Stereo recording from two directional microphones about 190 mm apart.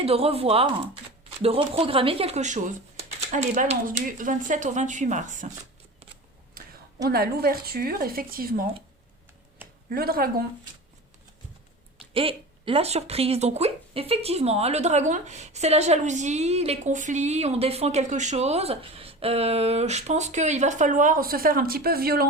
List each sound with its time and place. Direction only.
0.0 s speech: 30° right (ahead or behind)
7.1 s speech: 55° right (ahead or behind)
9.9 s speech: 50° right (ahead or behind)
11.9 s speech: 30° right (ahead or behind); by 22.3 s 55° right (ahead or behind)